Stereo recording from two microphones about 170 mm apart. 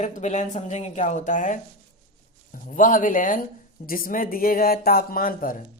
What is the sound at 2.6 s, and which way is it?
Speech, 50° left (ahead or behind).